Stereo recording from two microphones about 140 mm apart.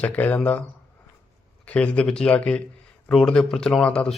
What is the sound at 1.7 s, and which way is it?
A man's voice, 10° left (ahead or behind).